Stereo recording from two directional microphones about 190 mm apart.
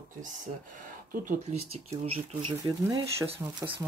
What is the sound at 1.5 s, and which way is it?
Speech, 35° right (ahead or behind).